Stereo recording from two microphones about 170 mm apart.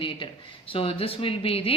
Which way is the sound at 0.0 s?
30° left (ahead or behind).